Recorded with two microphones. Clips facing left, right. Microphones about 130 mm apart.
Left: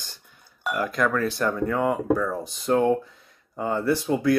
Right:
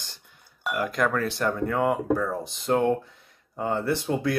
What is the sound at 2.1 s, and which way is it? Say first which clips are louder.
Speech: left 1 dB; 25° right (ahead or behind).